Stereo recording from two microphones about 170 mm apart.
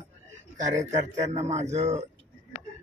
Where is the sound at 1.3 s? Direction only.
40° right (ahead or behind).